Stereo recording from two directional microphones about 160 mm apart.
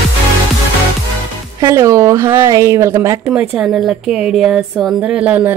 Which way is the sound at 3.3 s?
5° right (ahead or behind).